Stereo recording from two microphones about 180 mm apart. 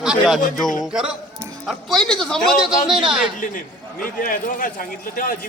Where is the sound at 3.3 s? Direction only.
45° left (ahead or behind).